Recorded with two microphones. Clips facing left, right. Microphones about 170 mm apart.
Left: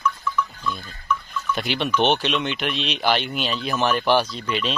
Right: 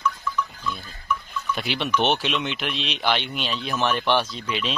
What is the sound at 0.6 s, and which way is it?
Goat, centre (ahead or behind).